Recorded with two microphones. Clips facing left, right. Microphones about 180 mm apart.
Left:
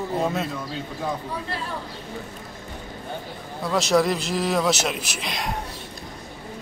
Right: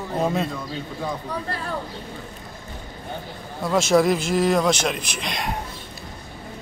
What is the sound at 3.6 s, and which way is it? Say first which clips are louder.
A man's voice: right 2 dB; centre (ahead or behind).